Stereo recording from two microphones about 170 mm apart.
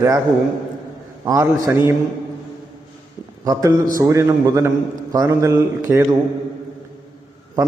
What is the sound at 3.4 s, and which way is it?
Mantra, 20° right (ahead or behind).